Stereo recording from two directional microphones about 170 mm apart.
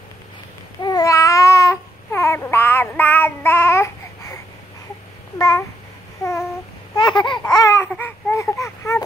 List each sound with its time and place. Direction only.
0.7 s babbling: 25° left (ahead or behind)
5.4 s cat: 20° left (ahead or behind)
7.0 s laughter: 25° left (ahead or behind)
7.9 s baby cry: 15° left (ahead or behind)